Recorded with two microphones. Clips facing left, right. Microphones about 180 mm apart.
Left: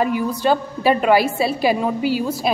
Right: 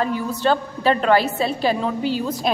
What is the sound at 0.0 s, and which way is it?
A woman's voice, 15° left (ahead or behind).